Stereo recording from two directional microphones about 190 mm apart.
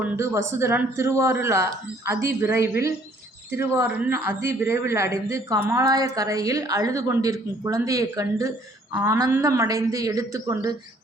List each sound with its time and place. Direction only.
0.0 s a woman's voice: 15° right (ahead or behind)